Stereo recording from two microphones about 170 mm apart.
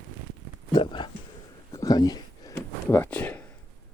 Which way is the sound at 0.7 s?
30° left (ahead or behind).